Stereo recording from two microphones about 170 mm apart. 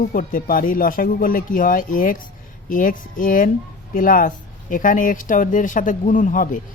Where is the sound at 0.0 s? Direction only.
55° left (ahead or behind).